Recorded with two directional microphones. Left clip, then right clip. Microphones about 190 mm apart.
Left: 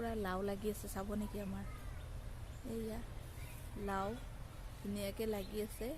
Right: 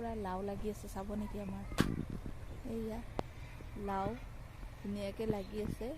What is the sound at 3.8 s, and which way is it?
Speech, 15° right (ahead or behind).